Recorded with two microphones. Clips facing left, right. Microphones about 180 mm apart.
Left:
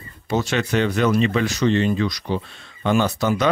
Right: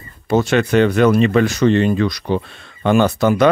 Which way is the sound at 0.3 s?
55° right (ahead or behind).